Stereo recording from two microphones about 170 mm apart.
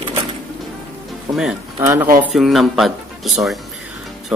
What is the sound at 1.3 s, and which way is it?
Speech, 5° right (ahead or behind).